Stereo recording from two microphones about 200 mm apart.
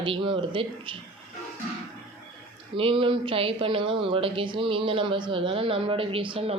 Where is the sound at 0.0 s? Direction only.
25° right (ahead or behind).